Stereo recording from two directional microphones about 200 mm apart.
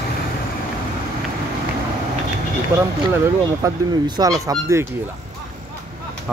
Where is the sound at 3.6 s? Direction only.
20° right (ahead or behind).